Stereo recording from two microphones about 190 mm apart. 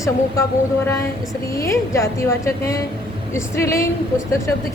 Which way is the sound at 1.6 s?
15° left (ahead or behind).